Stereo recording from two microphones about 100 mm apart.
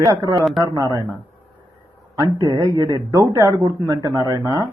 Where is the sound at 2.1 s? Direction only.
35° right (ahead or behind).